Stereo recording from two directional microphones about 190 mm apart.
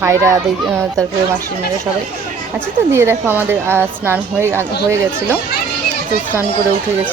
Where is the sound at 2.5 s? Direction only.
5° right (ahead or behind).